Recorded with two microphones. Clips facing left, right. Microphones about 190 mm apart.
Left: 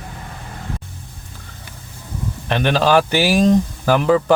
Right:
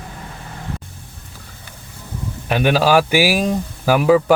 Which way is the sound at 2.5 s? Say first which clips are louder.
Right 1 dB; 10° right (ahead or behind).